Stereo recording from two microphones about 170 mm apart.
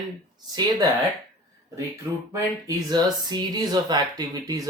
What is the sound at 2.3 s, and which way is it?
Speech, 20° right (ahead or behind).